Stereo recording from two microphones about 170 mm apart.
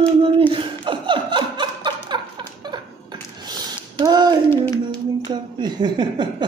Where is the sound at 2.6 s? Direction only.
25° right (ahead or behind).